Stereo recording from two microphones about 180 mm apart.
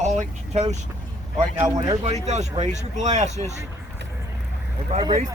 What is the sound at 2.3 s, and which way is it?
Speech, 40° right (ahead or behind).